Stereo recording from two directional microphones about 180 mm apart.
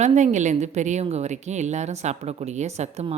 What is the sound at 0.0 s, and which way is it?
A woman's voice, 40° right (ahead or behind).